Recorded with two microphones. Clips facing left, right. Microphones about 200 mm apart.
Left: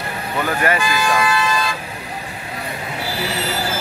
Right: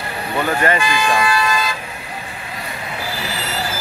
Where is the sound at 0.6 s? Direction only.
5° left (ahead or behind).